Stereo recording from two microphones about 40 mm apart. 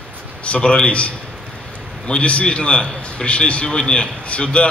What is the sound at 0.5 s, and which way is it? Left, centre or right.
A man's voice, left.